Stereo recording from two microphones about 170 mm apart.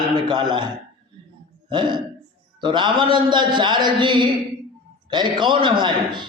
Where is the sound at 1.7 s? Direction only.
25° right (ahead or behind).